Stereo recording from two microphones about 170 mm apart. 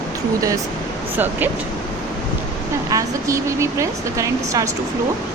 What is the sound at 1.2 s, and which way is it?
Speech, 10° right (ahead or behind).